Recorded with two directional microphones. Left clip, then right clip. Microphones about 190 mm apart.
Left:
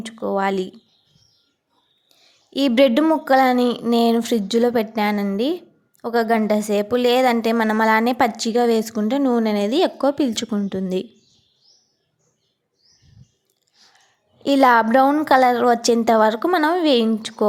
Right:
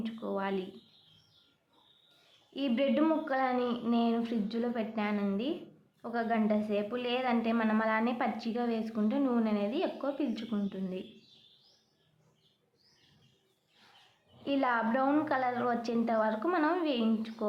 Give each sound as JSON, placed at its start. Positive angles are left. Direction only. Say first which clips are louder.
{"t": 0.0, "sound": "speech", "louder": "left 14 dB", "side_deg": 45}
{"t": 2.0, "sound": "a sound", "louder": "left 9 dB", "side_deg": 55}
{"t": 3.0, "sound": "speech", "louder": "left 14 dB", "side_deg": 50}
{"t": 14.4, "sound": "a woman's voice", "louder": "left 16 dB", "side_deg": 55}